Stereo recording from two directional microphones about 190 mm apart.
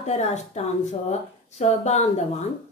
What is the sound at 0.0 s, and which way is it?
Speech, 35° left (ahead or behind).